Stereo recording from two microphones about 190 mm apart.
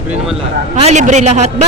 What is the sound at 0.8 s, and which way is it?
Speech, 40° right (ahead or behind).